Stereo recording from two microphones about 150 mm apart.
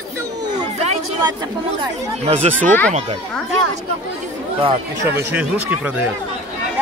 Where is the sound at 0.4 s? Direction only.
25° right (ahead or behind).